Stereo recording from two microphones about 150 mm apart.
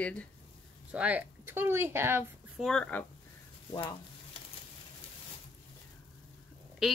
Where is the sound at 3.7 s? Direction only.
30° left (ahead or behind).